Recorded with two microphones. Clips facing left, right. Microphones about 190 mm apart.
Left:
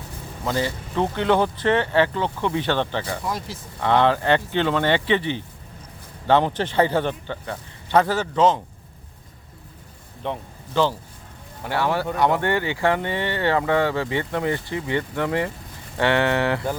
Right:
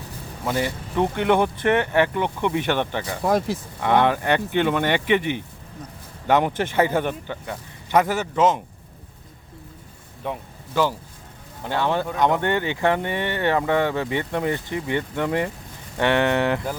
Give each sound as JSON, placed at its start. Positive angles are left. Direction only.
{"t": 0.4, "sound": "speech", "side_deg": -15}
{"t": 10.2, "sound": "speech", "side_deg": -5}
{"t": 11.6, "sound": "speech", "side_deg": -20}